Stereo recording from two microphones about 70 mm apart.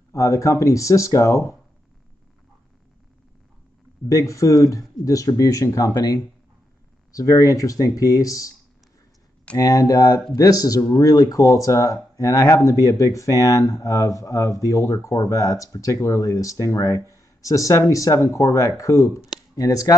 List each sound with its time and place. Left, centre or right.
0.1 s speech: left
4.1 s speech: left
5.9 s speech: left
7.1 s speech: left
9.6 s speech: left